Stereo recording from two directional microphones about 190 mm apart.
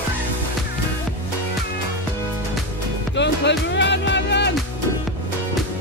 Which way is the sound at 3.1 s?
70° left (ahead or behind).